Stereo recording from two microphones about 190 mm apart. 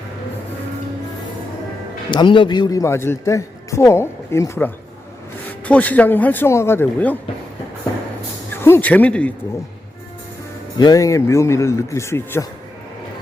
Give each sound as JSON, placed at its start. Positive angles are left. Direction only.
{"t": 2.0, "sound": "a man's voice", "side_deg": 25}
{"t": 8.6, "sound": "a man's voice", "side_deg": 10}
{"t": 10.8, "sound": "a man's voice", "side_deg": 20}